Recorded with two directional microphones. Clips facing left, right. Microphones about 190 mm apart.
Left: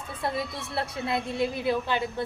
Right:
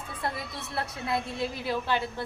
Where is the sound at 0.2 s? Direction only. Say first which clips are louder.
Left 4 dB; 25° left (ahead or behind).